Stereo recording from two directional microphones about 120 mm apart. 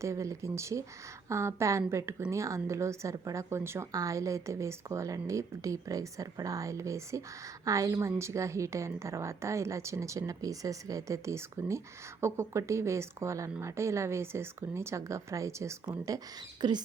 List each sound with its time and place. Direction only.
0.0 s a woman's voice: 25° right (ahead or behind)